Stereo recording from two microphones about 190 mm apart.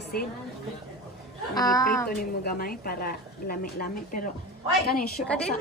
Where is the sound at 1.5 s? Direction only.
20° left (ahead or behind).